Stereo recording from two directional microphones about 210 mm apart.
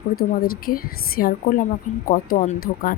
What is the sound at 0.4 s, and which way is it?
Speech, 45° left (ahead or behind).